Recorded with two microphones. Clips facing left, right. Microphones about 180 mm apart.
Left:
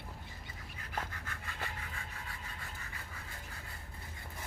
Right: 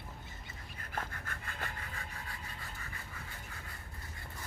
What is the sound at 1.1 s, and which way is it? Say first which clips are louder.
Rub: right 1 dB; 50° right (ahead or behind).